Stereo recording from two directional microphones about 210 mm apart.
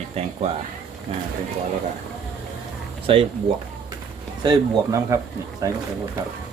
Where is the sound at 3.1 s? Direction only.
25° right (ahead or behind).